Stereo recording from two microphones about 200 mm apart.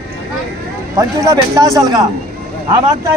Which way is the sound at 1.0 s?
15° right (ahead or behind).